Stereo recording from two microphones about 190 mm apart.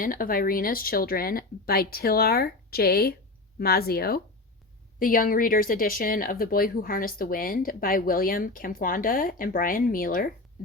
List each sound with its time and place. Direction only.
0.0 s speech: 45° left (ahead or behind)